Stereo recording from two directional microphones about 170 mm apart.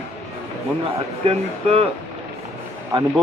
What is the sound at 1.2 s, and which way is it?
Speech, 35° right (ahead or behind).